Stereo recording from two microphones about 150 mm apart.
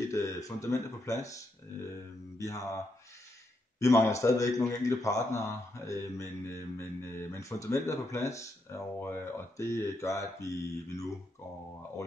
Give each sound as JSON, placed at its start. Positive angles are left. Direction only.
{"t": 0.1, "sound": "a man's voice", "side_deg": 20}
{"t": 3.8, "sound": "a man's voice", "side_deg": 20}